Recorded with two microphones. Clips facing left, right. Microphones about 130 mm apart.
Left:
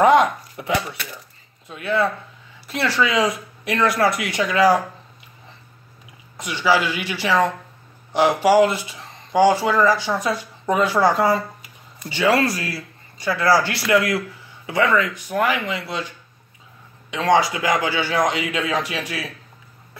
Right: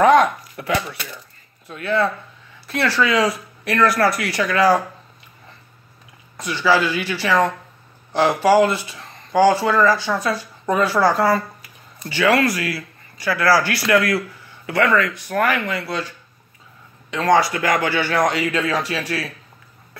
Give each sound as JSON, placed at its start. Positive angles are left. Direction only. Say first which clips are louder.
{"t": 0.0, "sound": "speech", "louder": "right 1 dB", "side_deg": 20}
{"t": 6.3, "sound": "speech", "louder": "right 1 dB", "side_deg": 25}
{"t": 8.5, "sound": "speech", "louder": "right 1 dB", "side_deg": 20}
{"t": 17.1, "sound": "speech", "louder": "right 1 dB", "side_deg": 15}